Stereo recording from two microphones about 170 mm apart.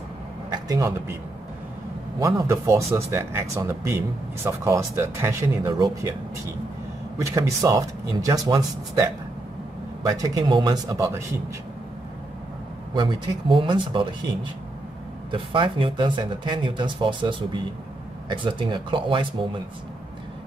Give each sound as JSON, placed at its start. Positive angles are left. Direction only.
{"t": 0.5, "sound": "a man's voice", "side_deg": -20}
{"t": 2.1, "sound": "speech", "side_deg": -20}
{"t": 7.2, "sound": "speech", "side_deg": -20}
{"t": 10.1, "sound": "speech", "side_deg": -25}
{"t": 12.9, "sound": "speech", "side_deg": -30}
{"t": 15.3, "sound": "speech", "side_deg": -30}